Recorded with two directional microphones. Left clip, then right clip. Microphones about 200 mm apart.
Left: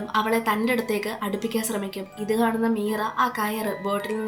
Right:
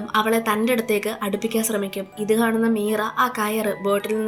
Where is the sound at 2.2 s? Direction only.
25° right (ahead or behind).